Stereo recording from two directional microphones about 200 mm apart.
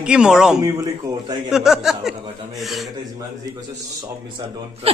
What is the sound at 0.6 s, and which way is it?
Speech, 15° right (ahead or behind).